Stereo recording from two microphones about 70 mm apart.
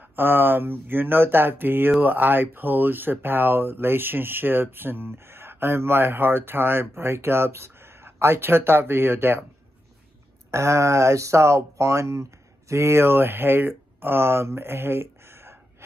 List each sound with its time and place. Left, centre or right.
0.1 s speech: right
10.5 s speech: right